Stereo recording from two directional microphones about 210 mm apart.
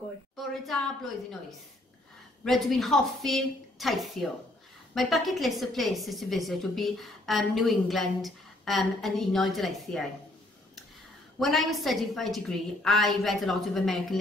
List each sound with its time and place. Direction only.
0.4 s a woman's voice: centre (ahead or behind)
2.4 s a woman's voice: centre (ahead or behind)
11.3 s a woman's voice: centre (ahead or behind)